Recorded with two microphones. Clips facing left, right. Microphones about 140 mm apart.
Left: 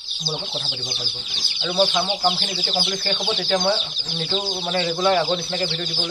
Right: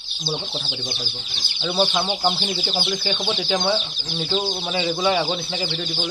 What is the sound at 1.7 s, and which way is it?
Speech, 5° right (ahead or behind).